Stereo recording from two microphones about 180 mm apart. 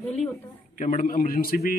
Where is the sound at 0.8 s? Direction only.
45° left (ahead or behind).